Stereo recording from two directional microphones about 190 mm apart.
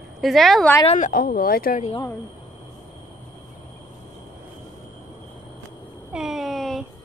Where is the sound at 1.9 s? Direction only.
20° left (ahead or behind).